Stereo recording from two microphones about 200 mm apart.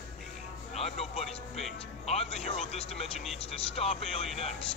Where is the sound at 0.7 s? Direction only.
30° left (ahead or behind).